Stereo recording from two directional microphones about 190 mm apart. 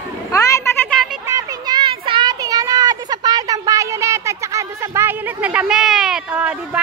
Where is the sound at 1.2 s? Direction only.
20° right (ahead or behind).